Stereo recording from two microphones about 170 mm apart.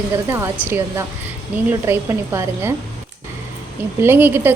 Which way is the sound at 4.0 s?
10° right (ahead or behind).